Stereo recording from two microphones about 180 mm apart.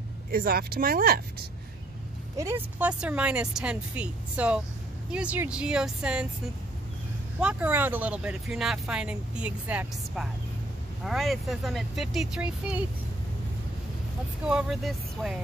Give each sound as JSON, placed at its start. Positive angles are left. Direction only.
{"t": 0.3, "sound": "speech", "side_deg": -55}
{"t": 2.3, "sound": "speech", "side_deg": -15}
{"t": 7.3, "sound": "speech", "side_deg": -5}
{"t": 14.4, "sound": "speech", "side_deg": -5}